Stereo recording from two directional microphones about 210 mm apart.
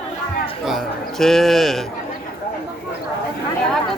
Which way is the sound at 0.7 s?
Centre (ahead or behind).